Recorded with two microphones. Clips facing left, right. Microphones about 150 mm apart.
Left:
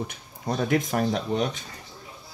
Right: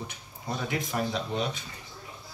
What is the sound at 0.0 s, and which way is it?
Speech, 50° left (ahead or behind).